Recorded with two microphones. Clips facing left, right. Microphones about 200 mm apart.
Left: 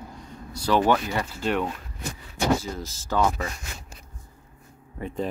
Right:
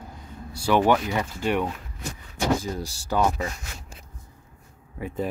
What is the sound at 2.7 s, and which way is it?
Speech, 15° right (ahead or behind).